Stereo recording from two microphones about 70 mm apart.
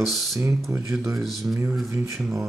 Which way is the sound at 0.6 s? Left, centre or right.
Right.